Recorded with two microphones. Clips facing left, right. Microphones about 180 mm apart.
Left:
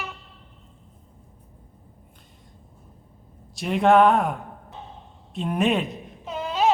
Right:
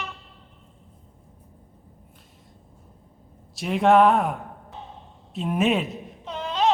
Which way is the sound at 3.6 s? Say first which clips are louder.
Even; centre (ahead or behind).